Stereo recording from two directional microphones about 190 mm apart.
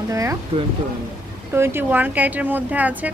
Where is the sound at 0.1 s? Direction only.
15° right (ahead or behind).